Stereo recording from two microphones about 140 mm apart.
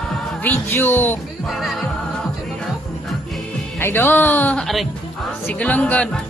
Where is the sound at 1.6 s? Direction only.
Centre (ahead or behind).